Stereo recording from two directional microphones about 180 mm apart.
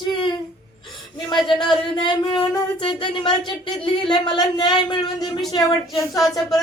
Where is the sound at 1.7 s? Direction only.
25° left (ahead or behind).